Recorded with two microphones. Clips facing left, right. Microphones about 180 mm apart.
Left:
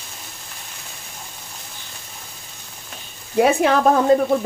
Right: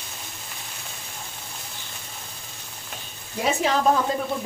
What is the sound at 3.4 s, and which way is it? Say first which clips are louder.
Speech: left 8 dB; 60° left (ahead or behind).